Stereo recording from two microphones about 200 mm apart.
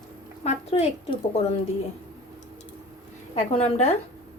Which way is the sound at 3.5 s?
30° left (ahead or behind).